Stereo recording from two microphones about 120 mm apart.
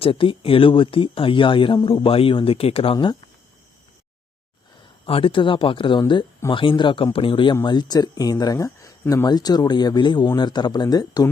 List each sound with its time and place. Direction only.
0.0 s speech: 50° left (ahead or behind)
5.0 s speech: 50° left (ahead or behind); by 11.3 s 35° left (ahead or behind)